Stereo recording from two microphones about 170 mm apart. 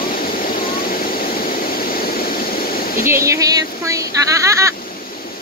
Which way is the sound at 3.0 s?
15° right (ahead or behind).